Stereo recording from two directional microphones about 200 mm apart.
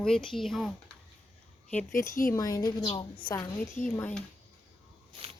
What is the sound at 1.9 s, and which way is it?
Speech, 40° left (ahead or behind).